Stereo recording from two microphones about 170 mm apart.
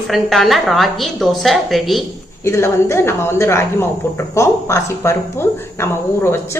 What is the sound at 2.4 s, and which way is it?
Speech, 15° left (ahead or behind).